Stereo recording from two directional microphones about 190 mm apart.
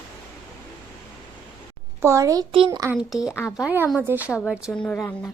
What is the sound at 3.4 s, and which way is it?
Speech, 10° left (ahead or behind).